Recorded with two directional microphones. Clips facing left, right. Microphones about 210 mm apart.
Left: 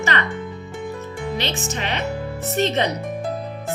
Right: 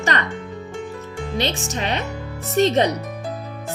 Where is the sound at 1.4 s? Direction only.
40° right (ahead or behind).